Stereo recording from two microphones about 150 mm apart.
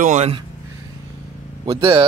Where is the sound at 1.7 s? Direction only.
30° right (ahead or behind).